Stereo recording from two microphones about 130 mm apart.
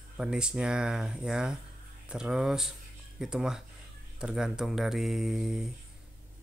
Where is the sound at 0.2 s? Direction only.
5° right (ahead or behind).